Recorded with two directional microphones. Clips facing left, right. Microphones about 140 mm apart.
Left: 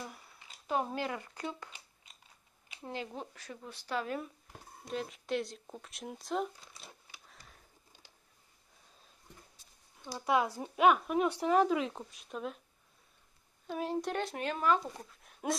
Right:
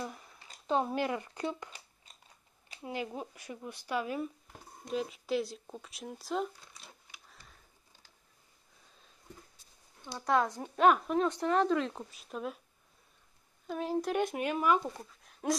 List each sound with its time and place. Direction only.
0.7 s speech: 20° right (ahead or behind)
2.8 s speech: 15° right (ahead or behind)
10.2 s speech: 5° left (ahead or behind)
13.7 s speech: centre (ahead or behind)
14.1 s speech: 10° right (ahead or behind)
15.0 s a sound: centre (ahead or behind)